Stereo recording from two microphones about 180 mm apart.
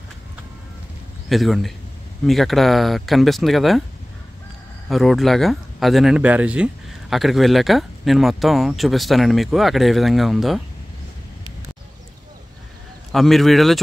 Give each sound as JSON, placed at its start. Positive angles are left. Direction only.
{"t": 1.3, "sound": "speech", "side_deg": 0}
{"t": 4.8, "sound": "speech", "side_deg": 0}
{"t": 13.1, "sound": "speech", "side_deg": 0}